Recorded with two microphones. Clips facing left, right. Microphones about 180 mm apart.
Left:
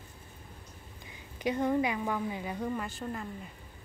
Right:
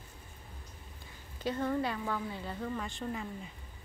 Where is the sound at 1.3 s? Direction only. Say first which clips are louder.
Left 4 dB; 15° left (ahead or behind).